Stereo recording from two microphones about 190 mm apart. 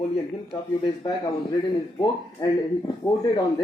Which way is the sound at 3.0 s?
20° left (ahead or behind).